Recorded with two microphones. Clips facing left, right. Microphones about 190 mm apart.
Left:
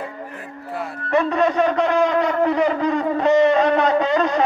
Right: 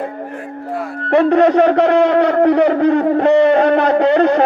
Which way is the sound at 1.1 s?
65° right (ahead or behind).